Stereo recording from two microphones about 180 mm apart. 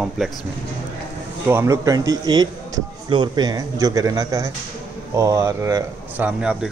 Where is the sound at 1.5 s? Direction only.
15° right (ahead or behind).